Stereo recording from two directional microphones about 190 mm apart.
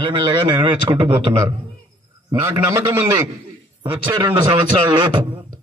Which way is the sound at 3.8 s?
25° right (ahead or behind).